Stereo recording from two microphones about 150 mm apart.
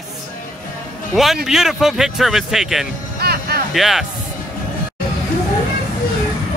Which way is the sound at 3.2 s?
90° right.